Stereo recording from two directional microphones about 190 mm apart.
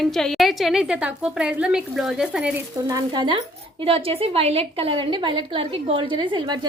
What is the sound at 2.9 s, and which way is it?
A woman's voice, 20° right (ahead or behind).